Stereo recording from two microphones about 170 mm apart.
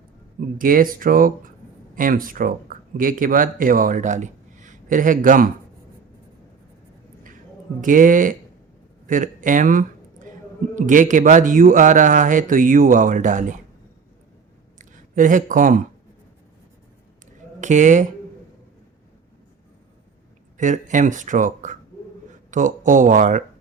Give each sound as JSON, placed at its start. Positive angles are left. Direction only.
{"t": 0.3, "sound": "speech", "side_deg": -55}
{"t": 7.8, "sound": "a man's voice", "side_deg": -50}
{"t": 9.0, "sound": "a sound", "side_deg": -50}
{"t": 10.8, "sound": "a man's voice", "side_deg": -50}
{"t": 14.8, "sound": "speech", "side_deg": -50}
{"t": 17.6, "sound": "speech", "side_deg": -45}
{"t": 20.6, "sound": "a man's voice", "side_deg": -50}